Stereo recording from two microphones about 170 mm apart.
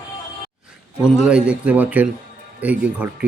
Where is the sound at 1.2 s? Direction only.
5° right (ahead or behind).